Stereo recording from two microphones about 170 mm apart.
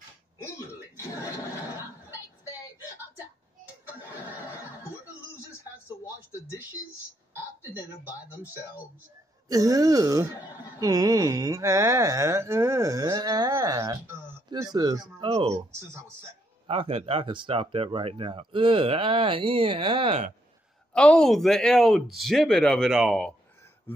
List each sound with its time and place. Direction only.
3.8 s a sound: 10° right (ahead or behind)
9.5 s speech: 20° right (ahead or behind)
16.6 s speech: 35° right (ahead or behind)
20.9 s speech: 5° left (ahead or behind)